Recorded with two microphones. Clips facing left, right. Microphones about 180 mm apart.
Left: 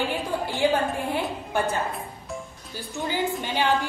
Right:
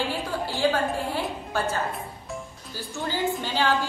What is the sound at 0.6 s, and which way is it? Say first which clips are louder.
Speech: left 2 dB; 15° left (ahead or behind).